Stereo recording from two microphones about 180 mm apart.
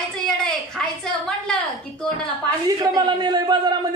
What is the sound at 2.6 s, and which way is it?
A man's voice, 20° right (ahead or behind).